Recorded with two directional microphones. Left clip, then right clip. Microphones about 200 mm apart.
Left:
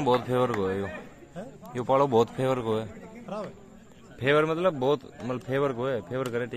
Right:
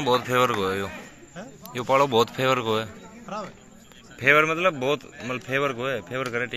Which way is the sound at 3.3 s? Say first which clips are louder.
Right 2 dB; 30° left (ahead or behind).